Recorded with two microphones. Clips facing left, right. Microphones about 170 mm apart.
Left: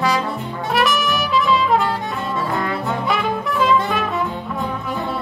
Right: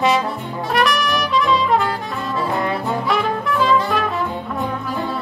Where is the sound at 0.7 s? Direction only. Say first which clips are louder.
Even; centre (ahead or behind).